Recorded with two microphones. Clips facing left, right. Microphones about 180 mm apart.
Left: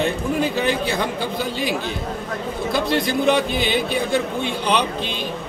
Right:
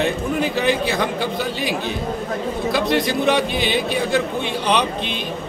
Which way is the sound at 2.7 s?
Centre (ahead or behind).